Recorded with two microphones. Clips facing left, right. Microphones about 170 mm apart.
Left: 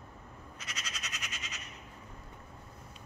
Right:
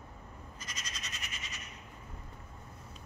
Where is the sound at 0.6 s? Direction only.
75° left (ahead or behind).